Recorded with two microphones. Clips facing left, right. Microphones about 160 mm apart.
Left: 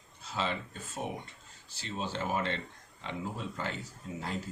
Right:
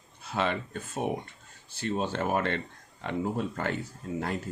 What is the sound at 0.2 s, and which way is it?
A man's voice, 60° right (ahead or behind).